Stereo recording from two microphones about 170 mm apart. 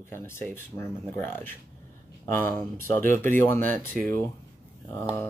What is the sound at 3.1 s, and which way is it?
Speech, 15° left (ahead or behind).